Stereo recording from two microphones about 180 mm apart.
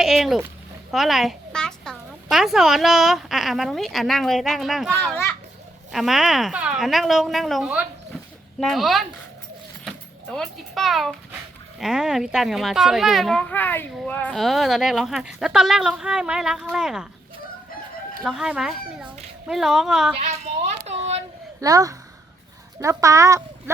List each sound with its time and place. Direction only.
0.0 s a woman's voice: centre (ahead or behind)
4.9 s a child's voice: 10° left (ahead or behind)
5.9 s speech: centre (ahead or behind)
9.8 s a sound: 5° left (ahead or behind)
11.8 s speech: 5° right (ahead or behind)
18.2 s speech: 5° right (ahead or behind)
20.1 s speech: 35° right (ahead or behind)
21.6 s speech: 20° right (ahead or behind)